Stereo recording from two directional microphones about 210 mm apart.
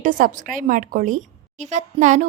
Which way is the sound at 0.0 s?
40° right (ahead or behind).